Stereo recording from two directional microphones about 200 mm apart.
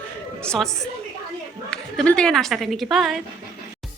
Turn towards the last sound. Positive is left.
turn(degrees=0)  # may be behind; listen again after turning